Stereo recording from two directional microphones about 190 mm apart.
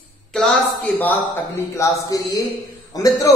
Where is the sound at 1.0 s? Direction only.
10° left (ahead or behind).